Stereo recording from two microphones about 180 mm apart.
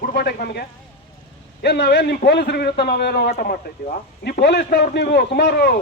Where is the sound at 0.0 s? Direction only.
65° left (ahead or behind).